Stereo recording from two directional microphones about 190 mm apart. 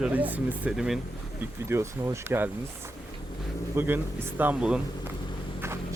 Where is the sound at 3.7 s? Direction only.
10° right (ahead or behind).